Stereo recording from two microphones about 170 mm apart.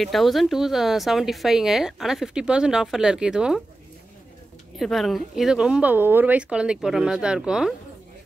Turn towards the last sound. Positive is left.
turn(degrees=-5)  # may be behind; listen again after turning